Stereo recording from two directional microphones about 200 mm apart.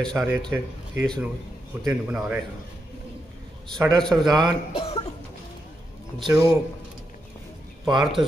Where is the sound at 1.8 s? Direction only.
5° right (ahead or behind).